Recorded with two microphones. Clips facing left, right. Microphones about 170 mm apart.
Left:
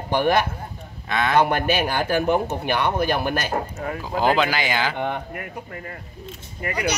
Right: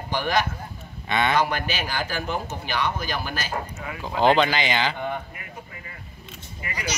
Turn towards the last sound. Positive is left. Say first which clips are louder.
# left 7 dB
turn(degrees=60)  # may be behind; listen again after turning